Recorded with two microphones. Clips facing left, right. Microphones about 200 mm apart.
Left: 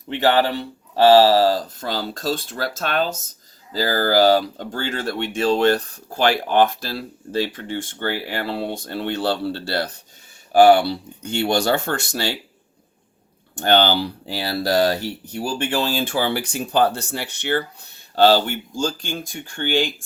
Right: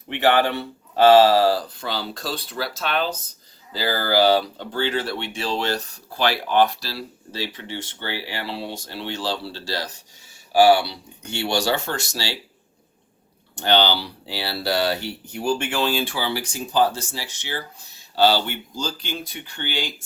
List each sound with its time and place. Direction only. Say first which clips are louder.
1.1 s speech: left 1 dB; 35° left (ahead or behind); by 12.3 s 55° left (ahead or behind)
13.6 s speech: left 3 dB; 50° left (ahead or behind)